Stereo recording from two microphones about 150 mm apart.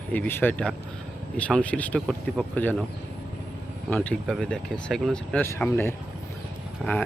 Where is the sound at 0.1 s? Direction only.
15° left (ahead or behind).